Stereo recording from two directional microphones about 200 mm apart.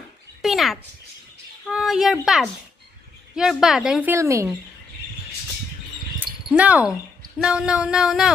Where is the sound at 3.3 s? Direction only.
5° right (ahead or behind).